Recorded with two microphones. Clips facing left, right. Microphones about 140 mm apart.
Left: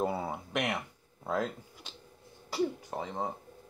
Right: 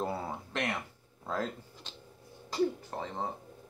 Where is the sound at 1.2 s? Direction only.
15° left (ahead or behind).